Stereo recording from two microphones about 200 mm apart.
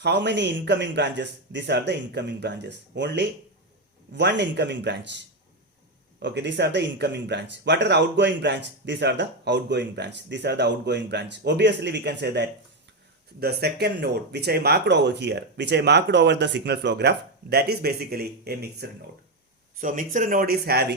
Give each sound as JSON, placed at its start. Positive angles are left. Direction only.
{"t": 0.0, "sound": "speech", "side_deg": -60}
{"t": 6.2, "sound": "speech", "side_deg": -60}
{"t": 19.8, "sound": "speech", "side_deg": -40}